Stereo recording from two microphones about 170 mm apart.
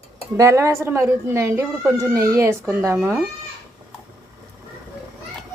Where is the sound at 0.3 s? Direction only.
15° right (ahead or behind).